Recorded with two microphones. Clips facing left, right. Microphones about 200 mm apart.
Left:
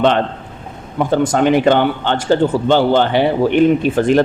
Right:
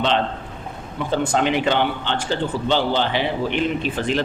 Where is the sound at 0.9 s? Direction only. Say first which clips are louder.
Left 6 dB; 50° left (ahead or behind).